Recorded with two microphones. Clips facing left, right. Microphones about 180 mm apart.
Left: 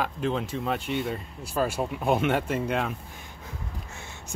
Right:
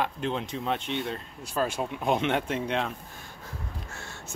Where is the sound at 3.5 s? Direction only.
20° left (ahead or behind).